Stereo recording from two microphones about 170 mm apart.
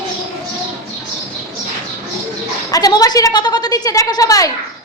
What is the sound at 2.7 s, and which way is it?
A woman's voice, 20° left (ahead or behind).